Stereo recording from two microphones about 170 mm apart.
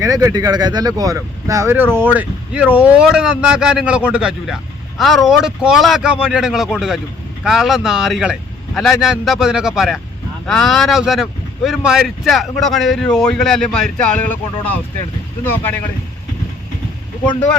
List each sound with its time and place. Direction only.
0.0 s speech: 20° right (ahead or behind); by 14.8 s 10° left (ahead or behind)